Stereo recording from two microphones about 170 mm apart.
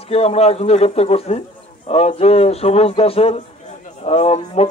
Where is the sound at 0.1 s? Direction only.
35° left (ahead or behind).